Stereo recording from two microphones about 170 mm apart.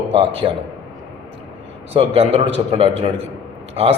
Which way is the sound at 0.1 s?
30° right (ahead or behind).